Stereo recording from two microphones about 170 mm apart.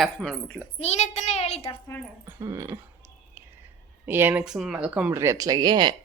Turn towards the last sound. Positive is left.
turn(degrees=-25)  # may be behind; listen again after turning